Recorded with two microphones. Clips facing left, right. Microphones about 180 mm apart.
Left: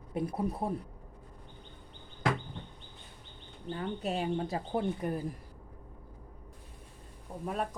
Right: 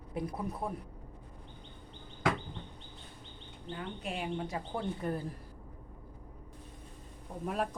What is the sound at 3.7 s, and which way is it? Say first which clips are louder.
Speech: left 5 dB; 40° left (ahead or behind).